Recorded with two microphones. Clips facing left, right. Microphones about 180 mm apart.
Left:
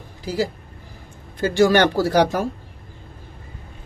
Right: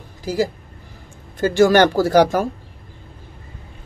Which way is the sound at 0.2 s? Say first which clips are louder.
Right 3 dB; 45° right (ahead or behind).